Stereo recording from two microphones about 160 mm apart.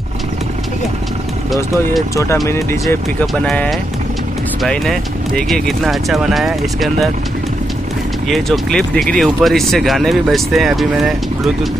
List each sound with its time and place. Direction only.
2.4 s speech: 15° left (ahead or behind); by 7.1 s centre (ahead or behind)
8.3 s speech: 5° left (ahead or behind)